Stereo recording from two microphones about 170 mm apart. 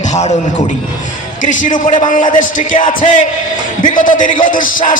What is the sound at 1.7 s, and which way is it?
A man's voice, 30° left (ahead or behind).